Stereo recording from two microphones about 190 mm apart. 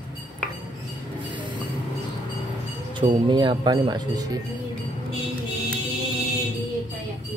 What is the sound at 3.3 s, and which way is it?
Speech, 25° right (ahead or behind).